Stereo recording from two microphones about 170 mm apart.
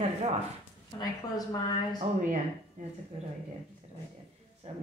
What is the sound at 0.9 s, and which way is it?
A woman's voice, 25° left (ahead or behind).